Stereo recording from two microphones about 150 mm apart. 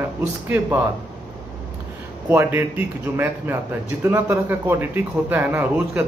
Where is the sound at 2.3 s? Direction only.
15° right (ahead or behind).